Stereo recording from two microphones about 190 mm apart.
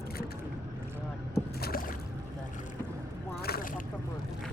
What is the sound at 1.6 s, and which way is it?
Rowboat, 50° left (ahead or behind).